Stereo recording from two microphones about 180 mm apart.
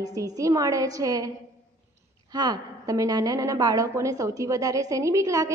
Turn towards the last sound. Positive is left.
turn(degrees=-20)  # may be behind; listen again after turning